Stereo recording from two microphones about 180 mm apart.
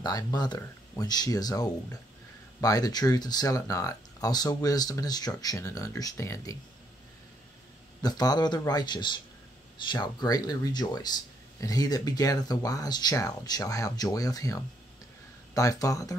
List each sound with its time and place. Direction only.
0.0 s speech: 20° left (ahead or behind)
8.0 s speech: 20° left (ahead or behind)